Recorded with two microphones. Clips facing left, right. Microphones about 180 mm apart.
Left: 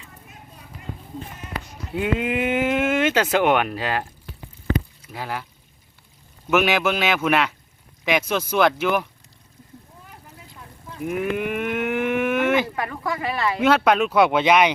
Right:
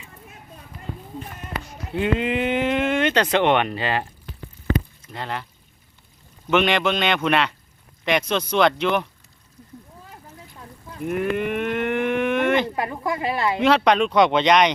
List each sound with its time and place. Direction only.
1.9 s speech: 5° left (ahead or behind)
6.5 s speech: 5° left (ahead or behind)
11.0 s cattle: 5° left (ahead or behind)
12.7 s speech: 25° right (ahead or behind)
13.6 s speech: 5° left (ahead or behind)